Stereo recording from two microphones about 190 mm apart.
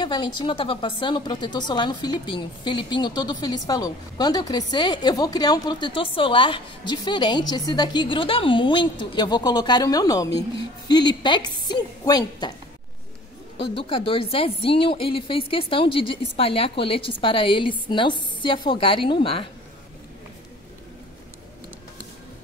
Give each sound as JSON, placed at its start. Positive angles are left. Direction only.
{"t": 0.0, "sound": "speech", "side_deg": 25}
{"t": 13.6, "sound": "speech", "side_deg": 25}